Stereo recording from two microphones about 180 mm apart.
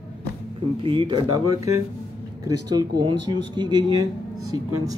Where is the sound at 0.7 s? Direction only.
30° right (ahead or behind).